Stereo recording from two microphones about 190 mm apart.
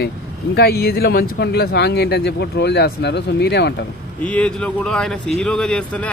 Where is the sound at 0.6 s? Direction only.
55° left (ahead or behind).